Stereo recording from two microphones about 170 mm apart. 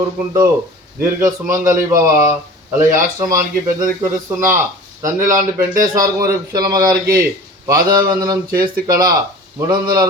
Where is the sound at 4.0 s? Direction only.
15° right (ahead or behind).